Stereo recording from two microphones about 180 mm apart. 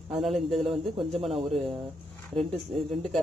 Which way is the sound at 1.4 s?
35° right (ahead or behind).